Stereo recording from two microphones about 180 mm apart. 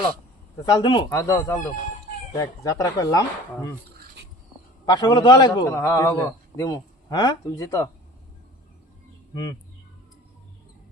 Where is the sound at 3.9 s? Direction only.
70° right (ahead or behind).